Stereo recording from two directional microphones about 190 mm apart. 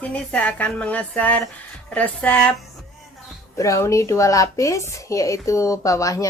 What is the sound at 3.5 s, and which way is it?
Speech, 15° left (ahead or behind).